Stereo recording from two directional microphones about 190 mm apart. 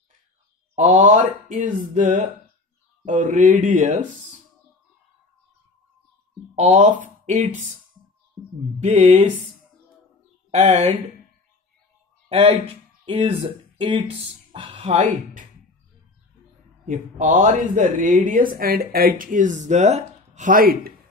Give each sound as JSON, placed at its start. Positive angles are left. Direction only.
{"t": 0.7, "sound": "speech", "side_deg": -40}
{"t": 6.5, "sound": "speech", "side_deg": -40}
{"t": 8.8, "sound": "speech", "side_deg": -35}
{"t": 10.5, "sound": "speech", "side_deg": -40}
{"t": 12.3, "sound": "speech", "side_deg": -30}
{"t": 16.8, "sound": "speech", "side_deg": -40}